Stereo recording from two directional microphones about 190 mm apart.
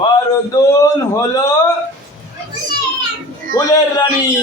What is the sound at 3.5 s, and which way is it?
Speech, 20° left (ahead or behind).